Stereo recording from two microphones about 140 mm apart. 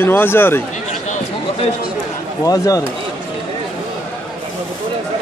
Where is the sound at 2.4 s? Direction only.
25° left (ahead or behind).